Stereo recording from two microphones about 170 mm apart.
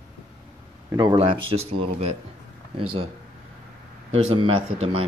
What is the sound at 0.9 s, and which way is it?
Speech, 30° right (ahead or behind).